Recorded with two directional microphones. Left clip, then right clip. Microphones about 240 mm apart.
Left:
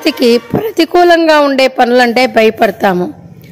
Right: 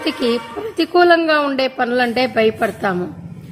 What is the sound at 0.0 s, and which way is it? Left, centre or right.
A woman's voice, left.